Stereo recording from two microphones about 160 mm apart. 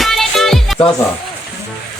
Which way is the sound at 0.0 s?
Centre (ahead or behind).